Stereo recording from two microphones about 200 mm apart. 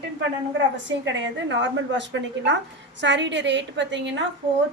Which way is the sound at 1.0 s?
65° right (ahead or behind).